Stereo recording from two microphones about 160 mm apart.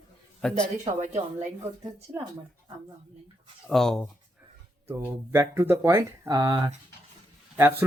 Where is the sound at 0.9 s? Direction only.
45° right (ahead or behind).